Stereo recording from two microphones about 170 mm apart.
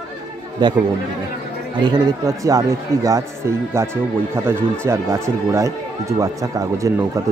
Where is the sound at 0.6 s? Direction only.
25° right (ahead or behind).